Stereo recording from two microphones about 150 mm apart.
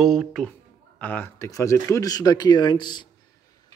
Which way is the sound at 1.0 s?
15° left (ahead or behind).